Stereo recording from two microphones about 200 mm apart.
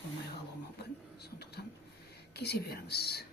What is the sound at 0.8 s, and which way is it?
Speech, 55° left (ahead or behind).